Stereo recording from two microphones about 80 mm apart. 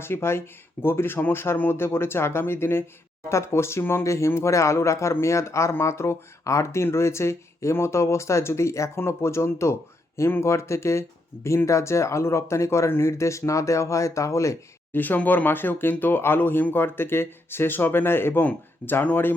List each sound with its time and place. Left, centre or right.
0.0 s speech: left
14.9 s speech: left